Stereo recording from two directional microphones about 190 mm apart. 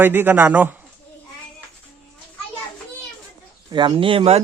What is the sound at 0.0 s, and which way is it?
Speech, 10° right (ahead or behind).